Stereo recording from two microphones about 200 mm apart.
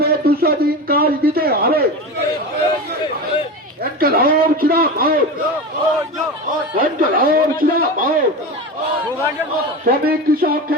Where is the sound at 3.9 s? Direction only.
50° right (ahead or behind).